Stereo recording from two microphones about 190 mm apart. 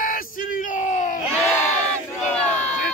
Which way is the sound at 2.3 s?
5° left (ahead or behind).